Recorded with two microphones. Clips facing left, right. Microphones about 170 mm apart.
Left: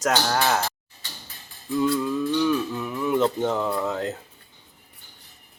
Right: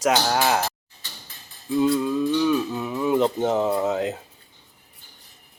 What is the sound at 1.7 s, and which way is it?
Speech, 20° right (ahead or behind).